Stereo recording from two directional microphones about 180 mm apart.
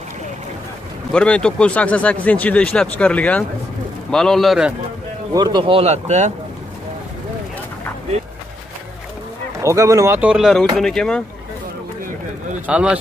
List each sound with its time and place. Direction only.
1.1 s a man's voice: 5° left (ahead or behind)
5.3 s speech: 25° right (ahead or behind)
9.6 s a man's voice: 15° right (ahead or behind); by 11.2 s 5° left (ahead or behind)
12.6 s a man's voice: 5° right (ahead or behind)